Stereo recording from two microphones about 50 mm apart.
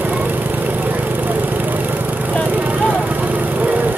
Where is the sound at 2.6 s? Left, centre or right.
Right.